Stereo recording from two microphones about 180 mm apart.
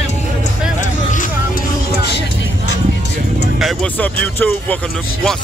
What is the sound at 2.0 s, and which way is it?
Music, 70° left (ahead or behind).